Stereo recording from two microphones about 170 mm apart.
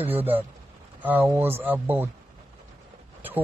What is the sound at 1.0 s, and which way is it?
Speech, 10° right (ahead or behind).